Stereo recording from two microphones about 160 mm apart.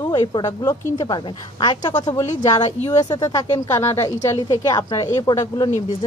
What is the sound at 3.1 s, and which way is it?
A woman's voice, 25° left (ahead or behind).